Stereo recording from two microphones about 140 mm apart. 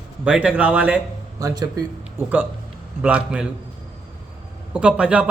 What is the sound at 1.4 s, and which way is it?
Speech, 30° right (ahead or behind).